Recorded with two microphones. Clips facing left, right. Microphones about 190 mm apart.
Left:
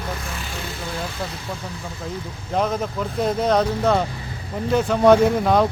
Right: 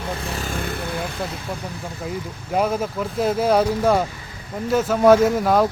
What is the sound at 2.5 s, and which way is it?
Speech, 10° right (ahead or behind).